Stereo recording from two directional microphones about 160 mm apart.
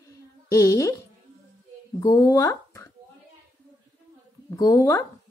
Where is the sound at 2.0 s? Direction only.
20° left (ahead or behind).